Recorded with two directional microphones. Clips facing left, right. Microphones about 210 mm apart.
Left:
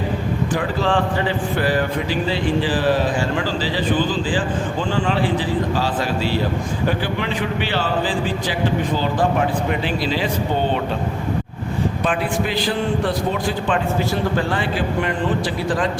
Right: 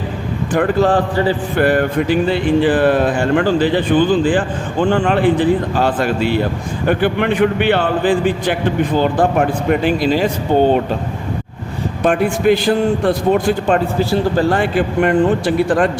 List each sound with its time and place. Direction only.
0.5 s a man's voice: 50° right (ahead or behind)
1.6 s speech: 55° right (ahead or behind)
12.0 s speech: 50° right (ahead or behind)
13.7 s a man's voice: 35° right (ahead or behind)
14.5 s speech: 50° right (ahead or behind)